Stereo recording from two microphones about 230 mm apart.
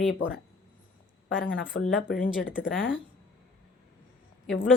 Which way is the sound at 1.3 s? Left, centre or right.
Left.